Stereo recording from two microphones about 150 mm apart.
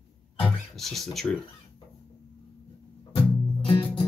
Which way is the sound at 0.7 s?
Centre (ahead or behind).